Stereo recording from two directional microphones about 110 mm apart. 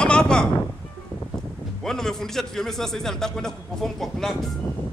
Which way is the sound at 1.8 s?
5° left (ahead or behind).